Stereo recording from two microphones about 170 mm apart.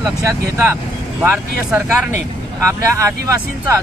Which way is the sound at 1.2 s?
10° right (ahead or behind).